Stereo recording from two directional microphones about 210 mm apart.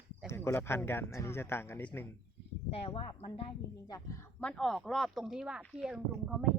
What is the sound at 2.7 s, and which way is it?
Speech, 25° left (ahead or behind).